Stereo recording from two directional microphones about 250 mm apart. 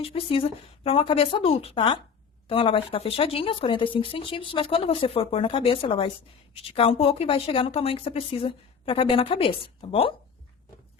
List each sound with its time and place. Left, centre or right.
0.0 s a woman's voice: left